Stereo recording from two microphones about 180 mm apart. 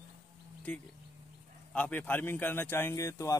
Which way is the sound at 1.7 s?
10° left (ahead or behind).